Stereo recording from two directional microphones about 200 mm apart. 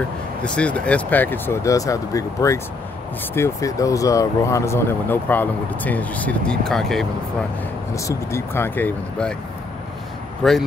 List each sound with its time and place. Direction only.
0.4 s speech: 5° left (ahead or behind)
7.9 s speech: 15° left (ahead or behind)
10.4 s speech: 5° left (ahead or behind)